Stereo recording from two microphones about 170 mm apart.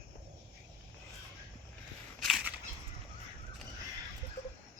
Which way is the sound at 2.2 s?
Centre (ahead or behind).